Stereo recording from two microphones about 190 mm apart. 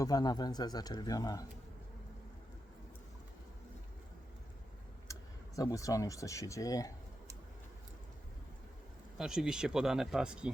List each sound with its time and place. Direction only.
0.0 s speech: 20° left (ahead or behind)
5.1 s a sound: 15° left (ahead or behind)
5.5 s speech: 15° left (ahead or behind)
9.1 s speech: centre (ahead or behind)